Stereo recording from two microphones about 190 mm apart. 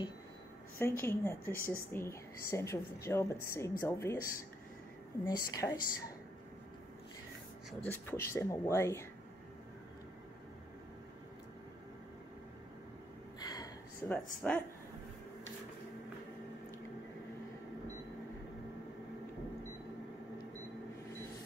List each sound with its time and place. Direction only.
0.7 s speech: 10° left (ahead or behind)
5.2 s speech: 20° left (ahead or behind)
7.8 s speech: 10° left (ahead or behind)
13.4 s a sound: 20° left (ahead or behind)
14.0 s speech: 10° left (ahead or behind)